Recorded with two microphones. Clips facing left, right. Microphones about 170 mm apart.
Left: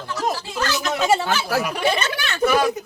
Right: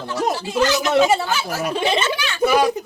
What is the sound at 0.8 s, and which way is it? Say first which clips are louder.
Speech: even; 15° right (ahead or behind).